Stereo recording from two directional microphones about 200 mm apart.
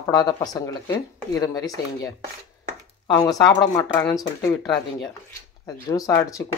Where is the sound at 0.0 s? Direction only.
20° left (ahead or behind).